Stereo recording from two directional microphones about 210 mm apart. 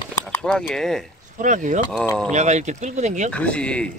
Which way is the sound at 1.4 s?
35° right (ahead or behind).